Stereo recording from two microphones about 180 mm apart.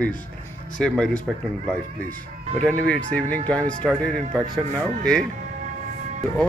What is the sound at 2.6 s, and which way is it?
A man's voice, 5° left (ahead or behind).